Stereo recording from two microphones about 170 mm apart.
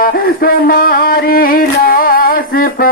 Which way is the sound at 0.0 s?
60° left (ahead or behind).